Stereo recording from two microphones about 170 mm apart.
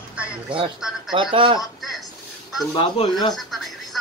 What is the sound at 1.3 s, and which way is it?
Speech, 30° right (ahead or behind).